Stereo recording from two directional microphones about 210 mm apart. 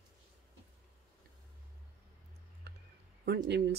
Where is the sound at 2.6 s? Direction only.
50° right (ahead or behind).